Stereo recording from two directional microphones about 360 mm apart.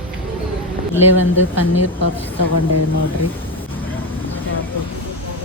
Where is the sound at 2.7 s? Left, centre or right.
Left.